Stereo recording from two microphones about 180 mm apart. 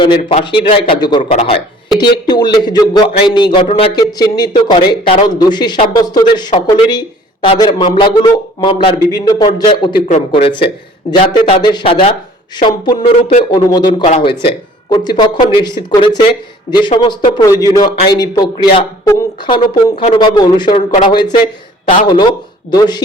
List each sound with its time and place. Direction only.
0.3 s speech: 30° left (ahead or behind)
1.2 s speech: 40° left (ahead or behind)
2.0 s speech: 25° left (ahead or behind)